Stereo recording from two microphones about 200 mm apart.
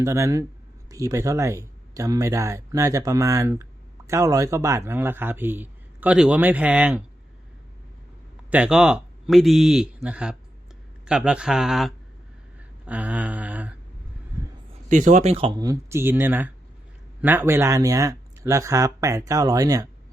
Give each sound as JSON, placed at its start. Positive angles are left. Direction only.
{"t": 0.0, "sound": "speech", "side_deg": -15}
{"t": 8.4, "sound": "speech", "side_deg": -5}
{"t": 12.5, "sound": "a sound", "side_deg": -5}
{"t": 14.8, "sound": "speech", "side_deg": -40}